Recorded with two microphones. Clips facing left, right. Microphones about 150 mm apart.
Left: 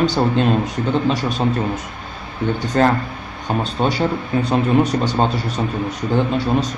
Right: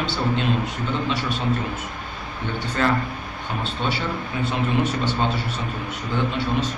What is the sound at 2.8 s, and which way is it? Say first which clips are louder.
A man's voice: left 5 dB; 45° left (ahead or behind).